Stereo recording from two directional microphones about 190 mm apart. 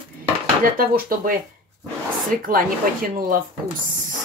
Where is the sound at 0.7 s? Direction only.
50° right (ahead or behind).